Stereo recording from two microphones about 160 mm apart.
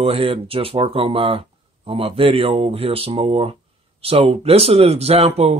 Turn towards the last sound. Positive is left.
turn(degrees=-40)  # may be behind; listen again after turning